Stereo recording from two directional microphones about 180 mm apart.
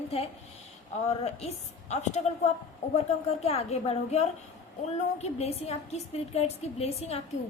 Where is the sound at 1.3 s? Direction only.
35° left (ahead or behind).